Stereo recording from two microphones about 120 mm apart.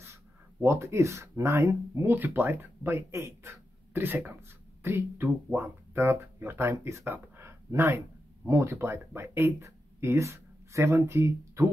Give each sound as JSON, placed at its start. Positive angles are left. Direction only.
{"t": 0.0, "sound": "speech", "side_deg": -20}